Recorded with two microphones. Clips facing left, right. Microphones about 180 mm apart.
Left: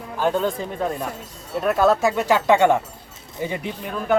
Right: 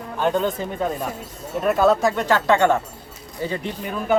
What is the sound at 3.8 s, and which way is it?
Speech, centre (ahead or behind).